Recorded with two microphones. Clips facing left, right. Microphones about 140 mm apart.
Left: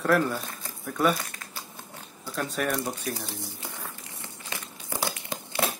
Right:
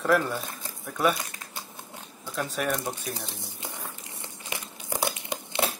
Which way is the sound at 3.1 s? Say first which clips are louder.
Left 2 dB; 20° right (ahead or behind).